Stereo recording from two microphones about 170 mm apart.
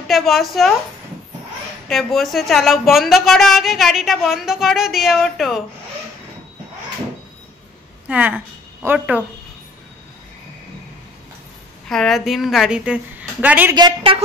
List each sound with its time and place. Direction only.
0.1 s speech: centre (ahead or behind)
1.9 s speech: centre (ahead or behind)
8.1 s speech: 10° right (ahead or behind)
11.9 s speech: centre (ahead or behind)
13.7 s a woman's voice: 30° right (ahead or behind)